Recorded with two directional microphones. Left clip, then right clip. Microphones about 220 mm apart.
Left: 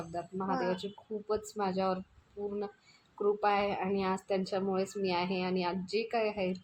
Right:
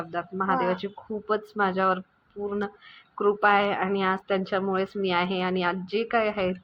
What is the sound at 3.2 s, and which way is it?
A woman's voice, 10° right (ahead or behind).